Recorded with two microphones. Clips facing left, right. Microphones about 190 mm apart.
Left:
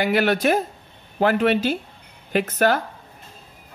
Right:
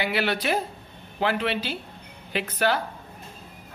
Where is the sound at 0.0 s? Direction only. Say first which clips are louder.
Left 7 dB; 45° left (ahead or behind).